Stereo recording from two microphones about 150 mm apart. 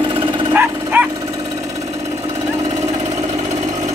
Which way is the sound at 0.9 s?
10° right (ahead or behind).